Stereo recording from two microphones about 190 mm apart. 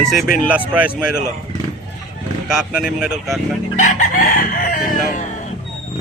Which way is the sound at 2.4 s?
5° right (ahead or behind).